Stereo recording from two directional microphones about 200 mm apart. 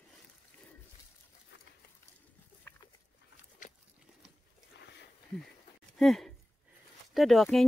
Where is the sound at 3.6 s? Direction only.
40° left (ahead or behind).